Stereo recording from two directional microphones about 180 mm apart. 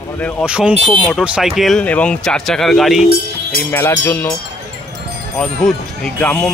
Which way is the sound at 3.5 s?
15° left (ahead or behind).